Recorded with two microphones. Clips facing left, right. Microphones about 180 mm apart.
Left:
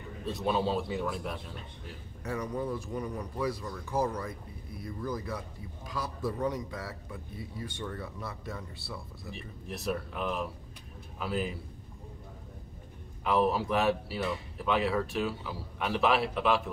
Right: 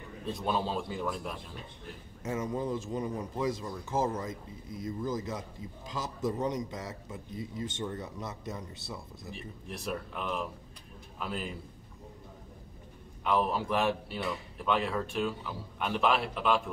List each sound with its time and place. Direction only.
0.2 s a man's voice: centre (ahead or behind)
2.2 s speech: 20° right (ahead or behind)
9.3 s a man's voice: centre (ahead or behind)
13.2 s a man's voice: centre (ahead or behind)